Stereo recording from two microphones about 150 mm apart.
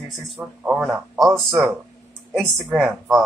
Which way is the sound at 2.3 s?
Centre (ahead or behind).